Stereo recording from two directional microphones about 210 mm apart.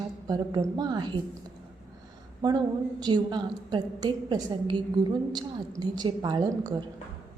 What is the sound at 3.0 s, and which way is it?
A woman's voice, 20° right (ahead or behind).